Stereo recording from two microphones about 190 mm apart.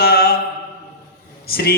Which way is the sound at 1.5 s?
55° left (ahead or behind).